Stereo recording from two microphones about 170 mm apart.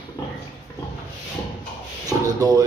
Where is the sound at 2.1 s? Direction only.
20° right (ahead or behind).